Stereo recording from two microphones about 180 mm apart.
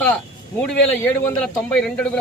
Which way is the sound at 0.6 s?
10° left (ahead or behind).